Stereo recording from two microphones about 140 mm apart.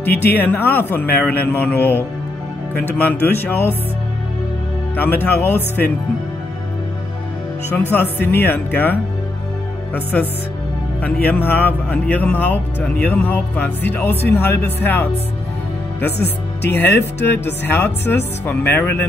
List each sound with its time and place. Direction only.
0.0 s speech: 15° left (ahead or behind)
4.9 s speech: 15° left (ahead or behind)
7.7 s speech: 15° left (ahead or behind)
11.2 s speech: 10° left (ahead or behind)
16.6 s speech: 15° left (ahead or behind)